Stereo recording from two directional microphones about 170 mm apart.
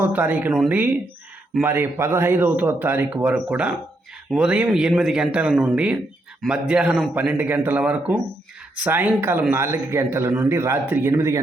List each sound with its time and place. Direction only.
0.0 s a man's voice: 10° right (ahead or behind)